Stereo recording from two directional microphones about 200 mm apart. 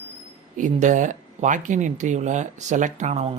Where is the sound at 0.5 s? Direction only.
40° right (ahead or behind).